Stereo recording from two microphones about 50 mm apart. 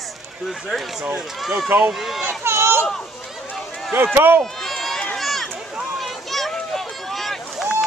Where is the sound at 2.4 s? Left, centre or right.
Right.